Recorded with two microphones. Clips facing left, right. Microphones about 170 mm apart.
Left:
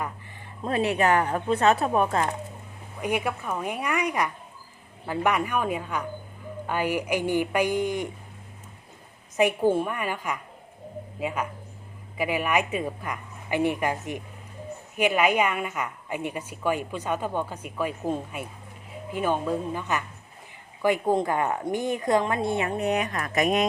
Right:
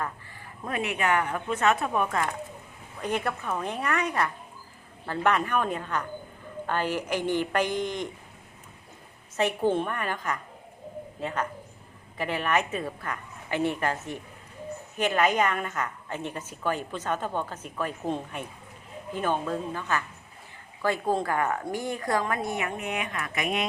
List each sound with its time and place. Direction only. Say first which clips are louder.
0.6 s speech: left 5 dB; 30° left (ahead or behind)
3.0 s a woman's voice: left 2 dB; 10° left (ahead or behind)
9.4 s a woman's voice: left 3 dB; 10° left (ahead or behind); by 23.6 s 40° left (ahead or behind)